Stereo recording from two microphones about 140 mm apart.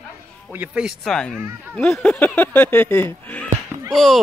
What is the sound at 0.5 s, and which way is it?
Speech, 10° right (ahead or behind).